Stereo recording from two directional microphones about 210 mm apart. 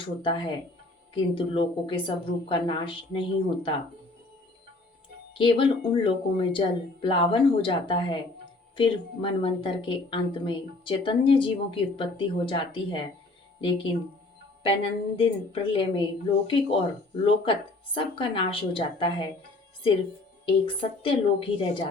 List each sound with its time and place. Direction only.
0.0 s a woman's voice: 25° left (ahead or behind)
5.3 s a woman's voice: 25° left (ahead or behind)
20.4 s a woman's voice: 25° left (ahead or behind)